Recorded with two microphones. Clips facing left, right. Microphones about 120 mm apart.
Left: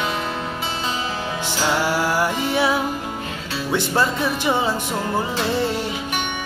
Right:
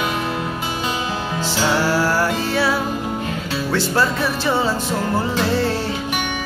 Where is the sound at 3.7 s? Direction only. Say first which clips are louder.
Right 1 dB; 20° left (ahead or behind).